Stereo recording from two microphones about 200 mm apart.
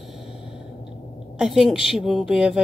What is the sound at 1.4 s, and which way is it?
A woman's voice, centre (ahead or behind).